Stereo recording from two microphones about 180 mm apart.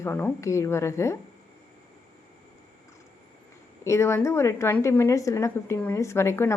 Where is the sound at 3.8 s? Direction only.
15° left (ahead or behind).